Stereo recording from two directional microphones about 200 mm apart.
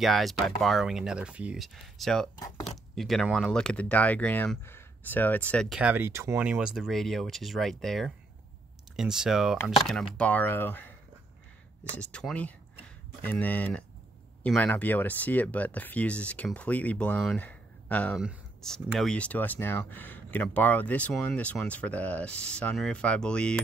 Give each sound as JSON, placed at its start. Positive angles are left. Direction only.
{"t": 0.0, "sound": "speech", "side_deg": 0}
{"t": 2.3, "sound": "speech", "side_deg": 15}
{"t": 3.0, "sound": "speech", "side_deg": 0}
{"t": 5.8, "sound": "speech", "side_deg": -10}
{"t": 11.9, "sound": "speech", "side_deg": 5}